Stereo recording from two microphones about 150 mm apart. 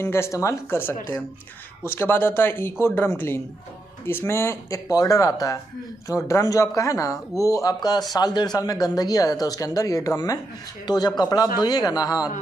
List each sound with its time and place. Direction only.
0.0 s speech: 20° left (ahead or behind)
2.0 s speech: 15° left (ahead or behind)